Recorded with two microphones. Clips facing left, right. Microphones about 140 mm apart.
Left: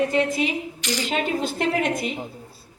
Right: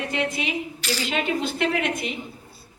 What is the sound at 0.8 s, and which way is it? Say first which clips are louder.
Speech: left 1 dB; 15° left (ahead or behind).